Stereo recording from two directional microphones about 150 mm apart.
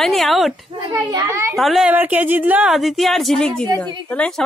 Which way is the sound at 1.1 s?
20° right (ahead or behind).